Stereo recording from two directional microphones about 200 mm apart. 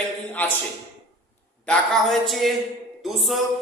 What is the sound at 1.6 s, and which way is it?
Speech, centre (ahead or behind).